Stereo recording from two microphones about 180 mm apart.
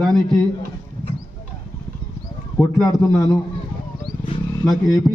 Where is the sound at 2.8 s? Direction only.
Centre (ahead or behind).